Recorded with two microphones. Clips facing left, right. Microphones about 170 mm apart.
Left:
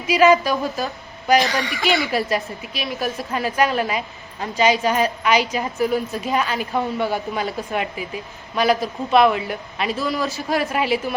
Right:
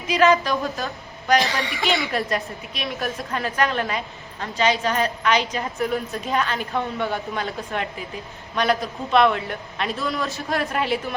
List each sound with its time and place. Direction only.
0.1 s a woman's voice: 5° left (ahead or behind)